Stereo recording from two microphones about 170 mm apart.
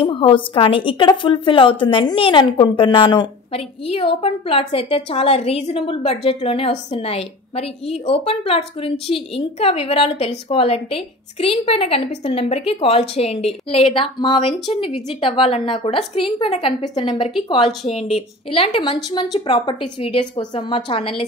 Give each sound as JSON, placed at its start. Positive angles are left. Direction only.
{"t": 0.0, "sound": "a woman's voice", "side_deg": 30}